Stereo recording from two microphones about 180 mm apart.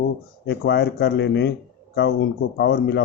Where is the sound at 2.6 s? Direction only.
65° left (ahead or behind).